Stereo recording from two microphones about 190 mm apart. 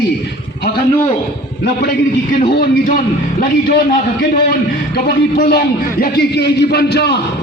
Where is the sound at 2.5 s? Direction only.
50° left (ahead or behind).